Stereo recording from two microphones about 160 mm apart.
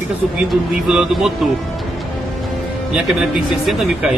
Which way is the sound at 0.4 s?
5° right (ahead or behind).